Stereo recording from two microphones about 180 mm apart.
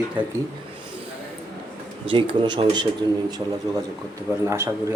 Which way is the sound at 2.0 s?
30° right (ahead or behind).